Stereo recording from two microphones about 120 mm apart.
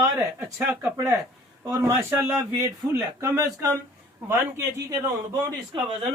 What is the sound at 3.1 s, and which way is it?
Speech, 25° right (ahead or behind).